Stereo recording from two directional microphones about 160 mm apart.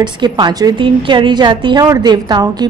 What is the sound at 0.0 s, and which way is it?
A woman's voice, 30° right (ahead or behind).